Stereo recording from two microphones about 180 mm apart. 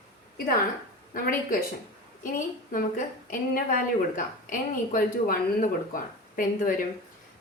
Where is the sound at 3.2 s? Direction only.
50° left (ahead or behind).